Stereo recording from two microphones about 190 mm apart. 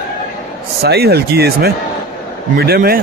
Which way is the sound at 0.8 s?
60° right (ahead or behind).